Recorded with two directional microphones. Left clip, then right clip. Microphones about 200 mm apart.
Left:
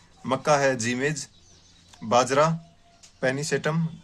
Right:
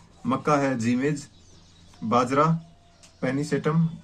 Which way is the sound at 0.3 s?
40° left (ahead or behind).